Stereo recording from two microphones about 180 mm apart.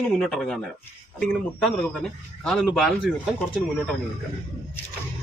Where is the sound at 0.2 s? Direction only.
Centre (ahead or behind).